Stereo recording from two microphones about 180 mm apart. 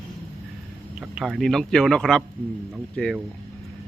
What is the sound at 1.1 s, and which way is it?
Speech, centre (ahead or behind).